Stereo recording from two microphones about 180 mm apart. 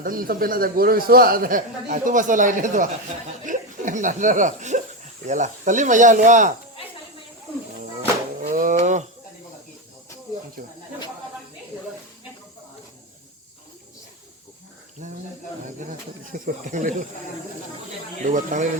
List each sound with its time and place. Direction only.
0.0 s speech: 50° right (ahead or behind)
8.4 s a sound: 50° right (ahead or behind)
10.6 s speech: 50° right (ahead or behind)
15.0 s snake: 45° right (ahead or behind)
15.8 s speech: 45° right (ahead or behind)
18.3 s speech: 45° right (ahead or behind)